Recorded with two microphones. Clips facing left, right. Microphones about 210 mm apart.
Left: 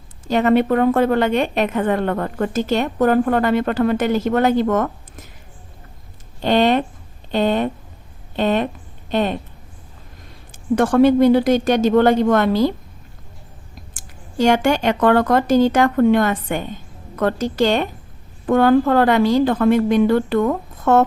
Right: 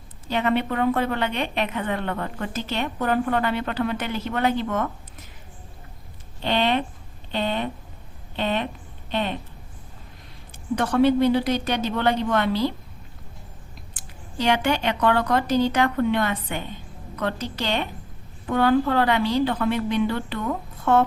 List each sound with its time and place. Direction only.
0.3 s a woman's voice: 45° left (ahead or behind)
6.4 s a woman's voice: 45° left (ahead or behind)
10.8 s a woman's voice: 50° left (ahead or behind)
13.9 s a woman's voice: 45° left (ahead or behind)